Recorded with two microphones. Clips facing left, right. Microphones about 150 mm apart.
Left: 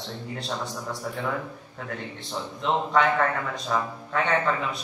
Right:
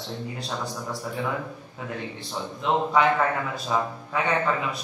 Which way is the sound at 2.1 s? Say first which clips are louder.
Even; 5° right (ahead or behind).